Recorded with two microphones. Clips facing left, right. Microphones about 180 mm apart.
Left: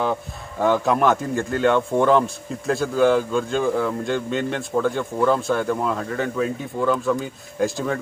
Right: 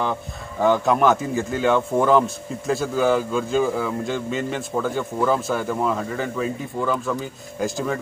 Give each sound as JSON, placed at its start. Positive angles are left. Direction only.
{"t": 0.0, "sound": "a man's voice", "side_deg": 0}